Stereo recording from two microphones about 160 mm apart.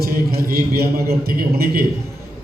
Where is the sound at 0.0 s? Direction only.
70° right (ahead or behind).